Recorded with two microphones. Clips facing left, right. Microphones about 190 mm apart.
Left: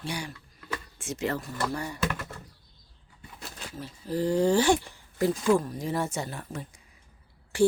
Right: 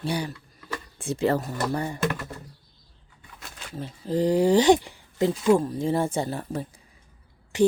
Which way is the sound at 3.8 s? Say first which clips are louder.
Right 5 dB; 20° right (ahead or behind).